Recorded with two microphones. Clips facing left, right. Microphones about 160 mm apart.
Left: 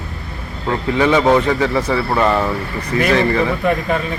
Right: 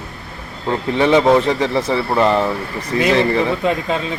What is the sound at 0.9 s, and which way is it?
A man's voice, 25° right (ahead or behind).